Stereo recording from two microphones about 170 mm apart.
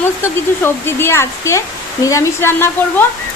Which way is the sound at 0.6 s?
15° left (ahead or behind).